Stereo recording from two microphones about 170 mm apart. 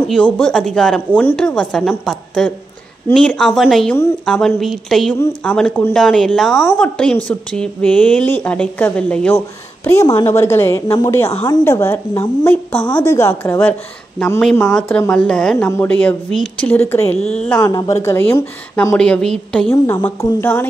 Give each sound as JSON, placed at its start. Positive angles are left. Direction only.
{"t": 0.1, "sound": "a woman's voice", "side_deg": 5}
{"t": 9.8, "sound": "a woman's voice", "side_deg": 15}
{"t": 17.5, "sound": "a woman's voice", "side_deg": 20}
{"t": 19.7, "sound": "a woman's voice", "side_deg": 15}